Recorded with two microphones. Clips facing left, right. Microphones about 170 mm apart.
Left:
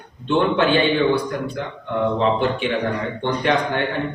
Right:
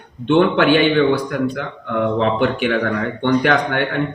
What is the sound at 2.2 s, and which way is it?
A man's voice, 70° right (ahead or behind).